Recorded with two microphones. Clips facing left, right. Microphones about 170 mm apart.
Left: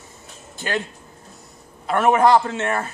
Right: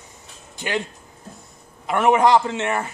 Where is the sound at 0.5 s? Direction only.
20° right (ahead or behind).